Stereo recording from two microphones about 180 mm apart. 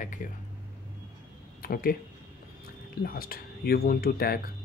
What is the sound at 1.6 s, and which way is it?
Speech, 55° left (ahead or behind).